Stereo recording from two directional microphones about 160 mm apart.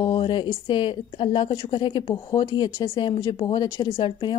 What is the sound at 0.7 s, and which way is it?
Speech, 30° left (ahead or behind).